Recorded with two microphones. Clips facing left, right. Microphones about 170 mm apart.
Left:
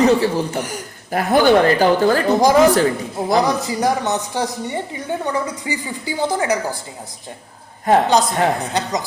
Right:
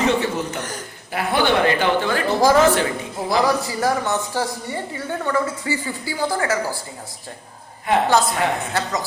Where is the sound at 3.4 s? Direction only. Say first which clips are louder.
Left 1 dB; 20° left (ahead or behind).